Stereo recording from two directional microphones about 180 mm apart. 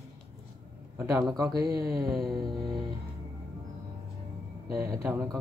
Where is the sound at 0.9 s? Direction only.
15° right (ahead or behind).